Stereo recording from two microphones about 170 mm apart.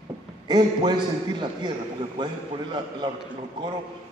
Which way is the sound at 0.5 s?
25° right (ahead or behind).